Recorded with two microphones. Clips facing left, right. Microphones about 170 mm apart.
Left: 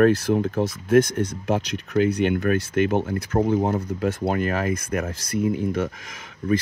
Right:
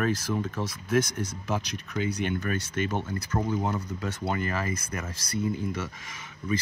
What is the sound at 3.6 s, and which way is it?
Speech, 50° left (ahead or behind).